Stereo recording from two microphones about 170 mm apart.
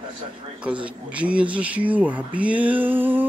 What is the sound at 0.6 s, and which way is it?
Speech, 5° right (ahead or behind).